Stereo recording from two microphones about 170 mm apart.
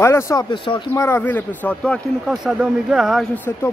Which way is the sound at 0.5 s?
30° left (ahead or behind).